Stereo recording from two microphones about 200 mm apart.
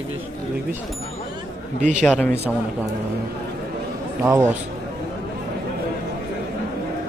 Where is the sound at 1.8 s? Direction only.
35° right (ahead or behind).